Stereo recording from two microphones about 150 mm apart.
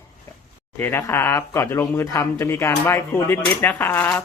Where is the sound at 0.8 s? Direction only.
15° left (ahead or behind).